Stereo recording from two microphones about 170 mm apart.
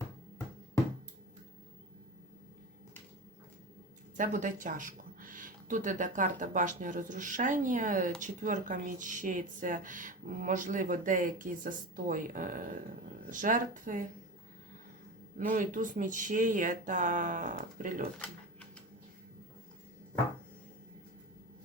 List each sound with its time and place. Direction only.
4.2 s speech: 50° right (ahead or behind)
15.4 s speech: 50° right (ahead or behind)